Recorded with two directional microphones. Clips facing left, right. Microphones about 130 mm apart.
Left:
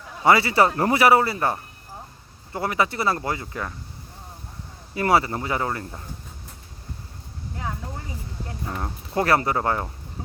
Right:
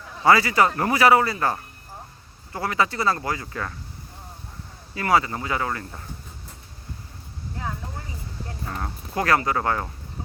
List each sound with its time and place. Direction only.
0.3 s speech: 25° left (ahead or behind)
4.9 s speech: 25° left (ahead or behind)
9.1 s speech: 25° left (ahead or behind)